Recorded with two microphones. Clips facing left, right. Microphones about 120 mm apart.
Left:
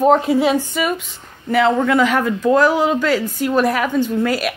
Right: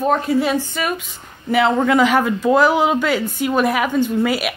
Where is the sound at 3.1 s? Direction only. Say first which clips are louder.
Left 1 dB; centre (ahead or behind).